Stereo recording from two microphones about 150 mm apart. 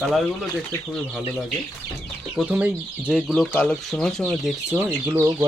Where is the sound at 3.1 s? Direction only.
5° left (ahead or behind).